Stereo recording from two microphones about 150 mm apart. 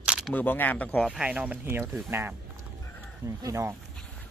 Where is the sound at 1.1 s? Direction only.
10° right (ahead or behind).